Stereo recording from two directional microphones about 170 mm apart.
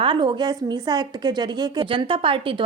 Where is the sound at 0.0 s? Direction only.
30° right (ahead or behind).